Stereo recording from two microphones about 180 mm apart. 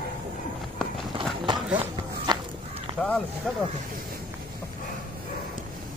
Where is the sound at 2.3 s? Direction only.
25° right (ahead or behind).